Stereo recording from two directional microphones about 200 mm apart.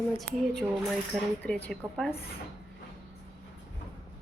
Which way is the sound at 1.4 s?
5° left (ahead or behind).